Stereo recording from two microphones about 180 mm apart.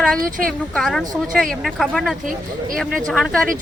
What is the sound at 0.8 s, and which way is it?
Speech, 5° left (ahead or behind).